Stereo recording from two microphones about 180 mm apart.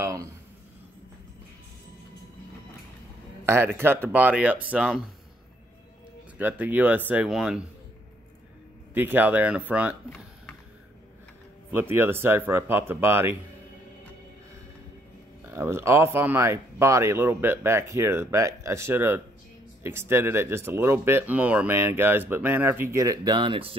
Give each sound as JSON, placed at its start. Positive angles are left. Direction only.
{"t": 0.0, "sound": "a sound", "side_deg": -20}
{"t": 3.4, "sound": "speech", "side_deg": -15}
{"t": 6.3, "sound": "speech", "side_deg": -10}
{"t": 8.9, "sound": "speech", "side_deg": -10}
{"t": 11.7, "sound": "speech", "side_deg": -10}
{"t": 15.4, "sound": "speech", "side_deg": -15}